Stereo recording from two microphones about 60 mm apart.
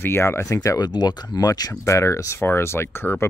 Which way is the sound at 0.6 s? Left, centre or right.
Left.